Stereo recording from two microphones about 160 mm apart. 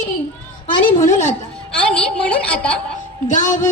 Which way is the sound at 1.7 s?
5° left (ahead or behind).